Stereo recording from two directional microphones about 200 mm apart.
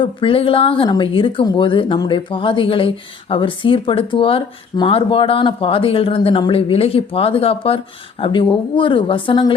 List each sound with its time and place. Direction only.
0.0 s speech: 25° left (ahead or behind)